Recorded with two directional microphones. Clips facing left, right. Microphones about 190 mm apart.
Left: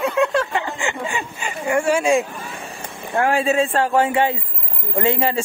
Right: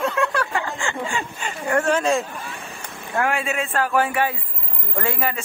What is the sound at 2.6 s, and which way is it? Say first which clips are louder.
Speech: left 3 dB; 30° left (ahead or behind).